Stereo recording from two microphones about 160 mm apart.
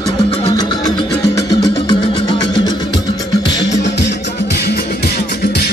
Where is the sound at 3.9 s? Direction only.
85° left.